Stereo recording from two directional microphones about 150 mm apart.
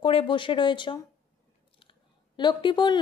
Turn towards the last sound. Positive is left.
turn(degrees=30)  # may be behind; listen again after turning